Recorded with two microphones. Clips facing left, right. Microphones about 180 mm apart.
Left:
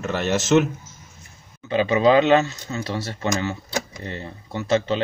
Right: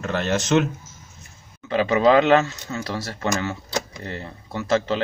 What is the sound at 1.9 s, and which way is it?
Speech, 25° left (ahead or behind).